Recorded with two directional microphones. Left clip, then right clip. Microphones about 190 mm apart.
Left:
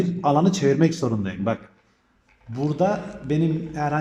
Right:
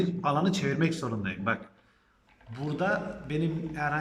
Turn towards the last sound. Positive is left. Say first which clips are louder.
# left 6 dB
turn(degrees=35)  # may be behind; listen again after turning